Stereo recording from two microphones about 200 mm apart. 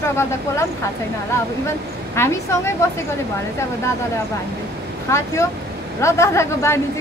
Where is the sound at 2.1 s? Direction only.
10° left (ahead or behind).